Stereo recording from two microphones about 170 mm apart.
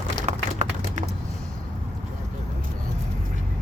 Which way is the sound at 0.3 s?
45° right (ahead or behind).